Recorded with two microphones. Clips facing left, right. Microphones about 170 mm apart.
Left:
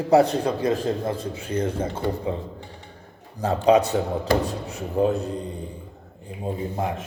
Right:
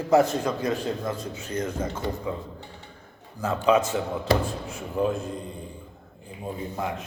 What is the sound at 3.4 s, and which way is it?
A man's voice, 35° left (ahead or behind).